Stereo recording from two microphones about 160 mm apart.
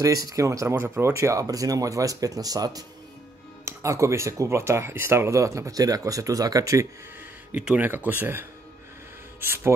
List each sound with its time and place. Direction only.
0.0 s speech: 20° right (ahead or behind)
7.5 s speech: 10° right (ahead or behind)